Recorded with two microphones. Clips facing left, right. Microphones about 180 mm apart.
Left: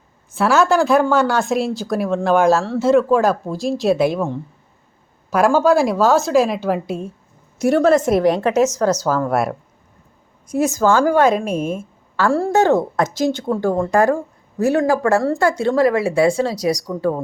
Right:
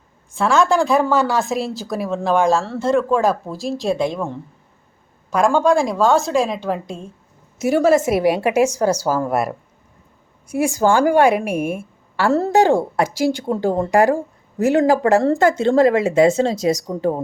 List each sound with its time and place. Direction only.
0.3 s speech: 5° left (ahead or behind)
7.6 s a woman's voice: 5° right (ahead or behind)